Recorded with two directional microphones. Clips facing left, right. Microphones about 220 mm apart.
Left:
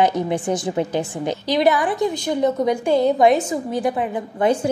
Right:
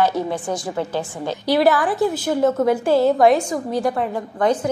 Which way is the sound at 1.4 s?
5° right (ahead or behind).